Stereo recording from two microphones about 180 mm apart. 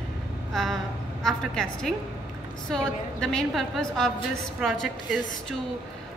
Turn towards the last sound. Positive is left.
turn(degrees=0)  # may be behind; listen again after turning